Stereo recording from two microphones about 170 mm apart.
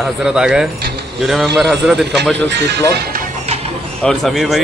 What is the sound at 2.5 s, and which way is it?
Speech, 90° right.